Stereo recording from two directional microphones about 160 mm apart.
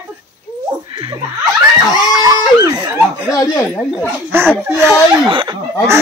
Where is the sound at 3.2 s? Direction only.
20° left (ahead or behind).